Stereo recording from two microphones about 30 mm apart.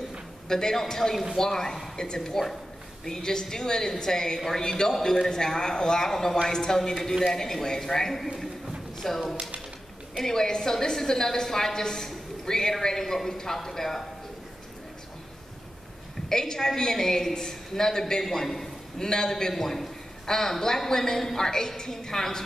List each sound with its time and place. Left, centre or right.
0.5 s a man's voice: centre
10.1 s a man's voice: centre
16.3 s a man's voice: centre
19.5 s a man's voice: centre